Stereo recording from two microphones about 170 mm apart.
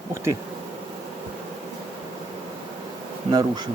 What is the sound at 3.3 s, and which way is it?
Bee, 25° right (ahead or behind).